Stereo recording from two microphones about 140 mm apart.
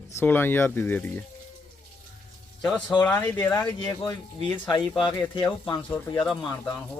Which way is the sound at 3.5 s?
30° left (ahead or behind).